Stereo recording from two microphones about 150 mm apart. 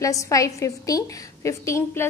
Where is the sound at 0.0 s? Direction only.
20° left (ahead or behind).